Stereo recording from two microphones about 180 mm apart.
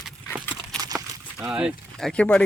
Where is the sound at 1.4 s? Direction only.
5° right (ahead or behind).